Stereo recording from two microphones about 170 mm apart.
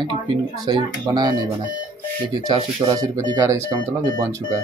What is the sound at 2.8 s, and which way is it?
Speech, 20° right (ahead or behind).